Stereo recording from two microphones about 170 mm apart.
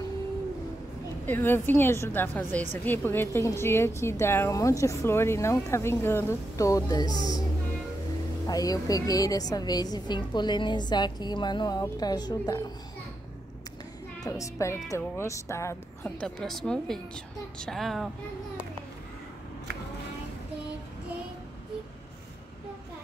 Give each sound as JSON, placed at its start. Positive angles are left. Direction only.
{"t": 1.2, "sound": "a woman's voice", "side_deg": 10}
{"t": 8.5, "sound": "a woman's voice", "side_deg": 20}
{"t": 14.2, "sound": "a woman's voice", "side_deg": 20}